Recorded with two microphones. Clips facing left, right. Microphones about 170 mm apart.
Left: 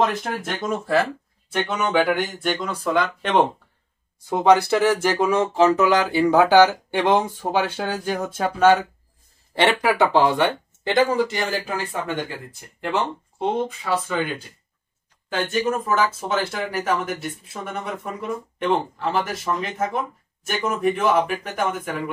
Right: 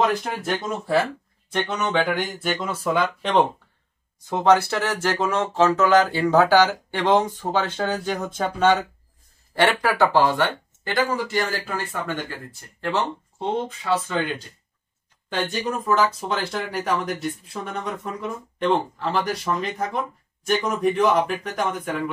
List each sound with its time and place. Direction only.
0.0 s speech: centre (ahead or behind)
4.3 s speech: 15° left (ahead or behind)